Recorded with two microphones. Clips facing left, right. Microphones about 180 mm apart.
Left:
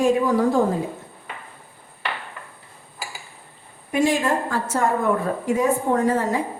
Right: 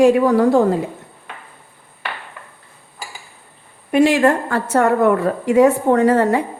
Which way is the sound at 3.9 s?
65° right (ahead or behind).